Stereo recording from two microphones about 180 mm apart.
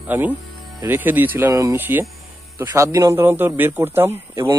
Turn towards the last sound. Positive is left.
turn(degrees=-15)  # may be behind; listen again after turning